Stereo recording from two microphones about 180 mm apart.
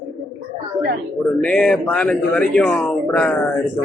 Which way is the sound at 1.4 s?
5° left (ahead or behind).